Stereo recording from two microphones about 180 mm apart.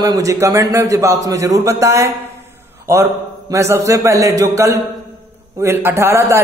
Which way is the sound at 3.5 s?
15° right (ahead or behind).